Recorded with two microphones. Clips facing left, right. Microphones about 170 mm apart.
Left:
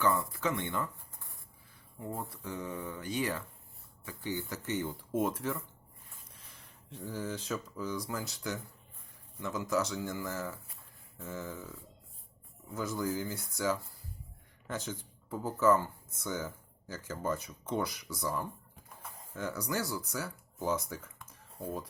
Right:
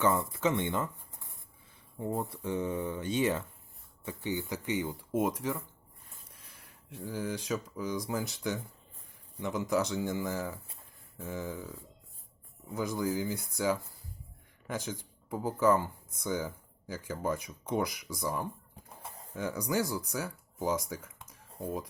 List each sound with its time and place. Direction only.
0.0 s speech: 20° right (ahead or behind)
6.9 s speech: 10° right (ahead or behind)
12.7 s speech: 15° right (ahead or behind)